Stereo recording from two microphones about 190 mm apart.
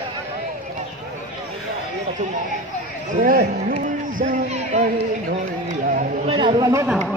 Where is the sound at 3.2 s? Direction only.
50° right (ahead or behind).